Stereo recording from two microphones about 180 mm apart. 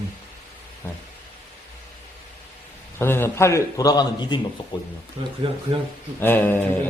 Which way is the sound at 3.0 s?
15° left (ahead or behind).